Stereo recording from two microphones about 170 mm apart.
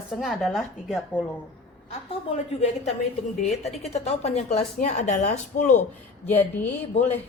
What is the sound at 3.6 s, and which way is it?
A woman's voice, 40° left (ahead or behind).